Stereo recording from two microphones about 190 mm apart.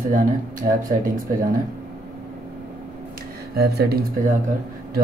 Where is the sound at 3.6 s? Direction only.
60° right (ahead or behind).